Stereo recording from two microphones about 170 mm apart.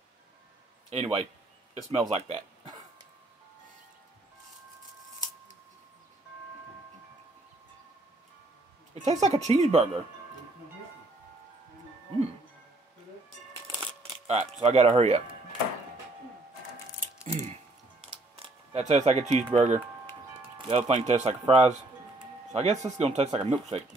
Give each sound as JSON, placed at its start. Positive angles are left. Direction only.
{"t": 0.8, "sound": "speech", "side_deg": -35}
{"t": 8.9, "sound": "speech", "side_deg": -45}
{"t": 14.2, "sound": "speech", "side_deg": -40}
{"t": 17.3, "sound": "music", "side_deg": -45}
{"t": 18.0, "sound": "a sound", "side_deg": -35}
{"t": 20.5, "sound": "speech", "side_deg": -30}